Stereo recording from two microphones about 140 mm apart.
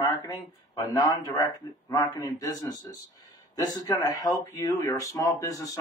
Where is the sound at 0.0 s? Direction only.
30° left (ahead or behind).